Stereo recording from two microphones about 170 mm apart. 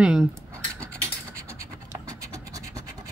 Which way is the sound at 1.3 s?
15° right (ahead or behind).